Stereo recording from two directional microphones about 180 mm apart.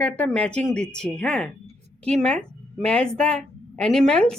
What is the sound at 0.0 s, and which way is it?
A woman's voice, 5° left (ahead or behind).